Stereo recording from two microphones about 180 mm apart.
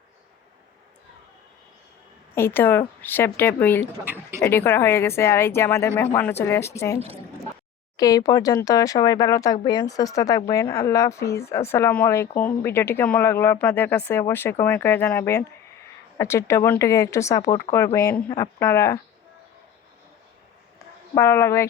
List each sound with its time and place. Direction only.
2.3 s speech: 10° left (ahead or behind)
4.0 s speech: 10° right (ahead or behind)
4.4 s speech: 15° left (ahead or behind)
21.2 s speech: 15° left (ahead or behind)